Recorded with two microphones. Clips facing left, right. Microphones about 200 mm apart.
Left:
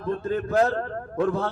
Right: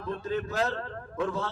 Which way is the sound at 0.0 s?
50° left (ahead or behind).